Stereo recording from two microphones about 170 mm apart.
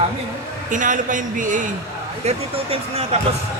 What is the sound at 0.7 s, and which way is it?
Speech, 50° right (ahead or behind).